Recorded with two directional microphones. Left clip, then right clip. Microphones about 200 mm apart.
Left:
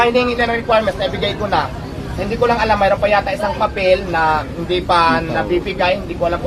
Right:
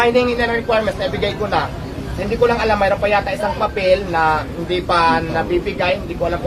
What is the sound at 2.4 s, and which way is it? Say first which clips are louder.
Speech: left 2 dB; 20° right (ahead or behind).